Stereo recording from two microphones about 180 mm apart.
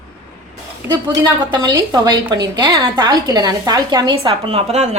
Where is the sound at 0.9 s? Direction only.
25° right (ahead or behind).